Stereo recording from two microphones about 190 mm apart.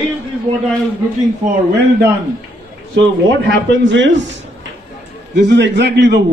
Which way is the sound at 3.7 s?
75° right (ahead or behind).